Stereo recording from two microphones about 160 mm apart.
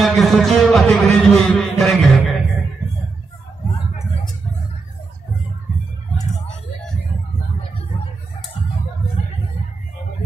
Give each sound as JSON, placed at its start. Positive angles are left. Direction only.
{"t": 0.0, "sound": "a man's voice", "side_deg": 0}